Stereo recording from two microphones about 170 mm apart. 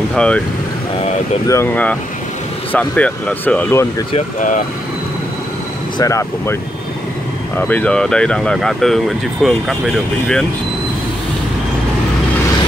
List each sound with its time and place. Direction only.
0.1 s speech: 5° left (ahead or behind)
1.5 s speech: 10° left (ahead or behind)
4.4 s speech: 50° left (ahead or behind)
5.9 s speech: 20° left (ahead or behind)
7.5 s speech: 10° left (ahead or behind)